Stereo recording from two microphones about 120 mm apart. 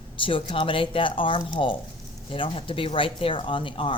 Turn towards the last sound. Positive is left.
turn(degrees=45)  # may be behind; listen again after turning